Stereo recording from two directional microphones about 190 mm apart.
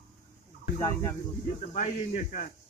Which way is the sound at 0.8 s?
15° left (ahead or behind).